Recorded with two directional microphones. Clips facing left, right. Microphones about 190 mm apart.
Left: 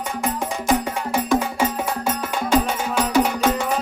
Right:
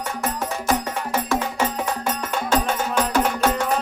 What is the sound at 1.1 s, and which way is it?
Music, 10° left (ahead or behind).